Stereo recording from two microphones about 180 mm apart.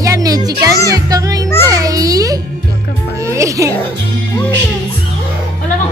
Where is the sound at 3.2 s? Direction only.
15° right (ahead or behind).